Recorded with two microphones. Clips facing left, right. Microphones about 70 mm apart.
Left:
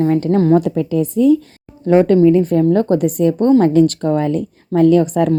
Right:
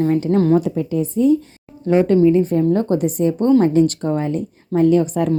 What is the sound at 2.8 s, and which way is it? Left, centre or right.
A woman's voice, left.